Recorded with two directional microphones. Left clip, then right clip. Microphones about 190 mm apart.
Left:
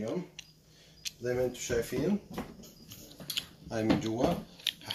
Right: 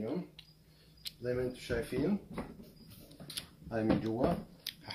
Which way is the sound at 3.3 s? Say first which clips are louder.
Left 5 dB; 10° right (ahead or behind).